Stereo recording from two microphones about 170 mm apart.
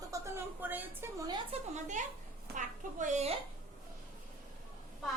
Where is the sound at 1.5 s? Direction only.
45° right (ahead or behind).